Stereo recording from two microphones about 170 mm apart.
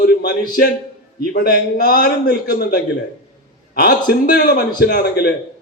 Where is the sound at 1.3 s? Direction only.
60° left (ahead or behind); by 5.3 s 75° left (ahead or behind).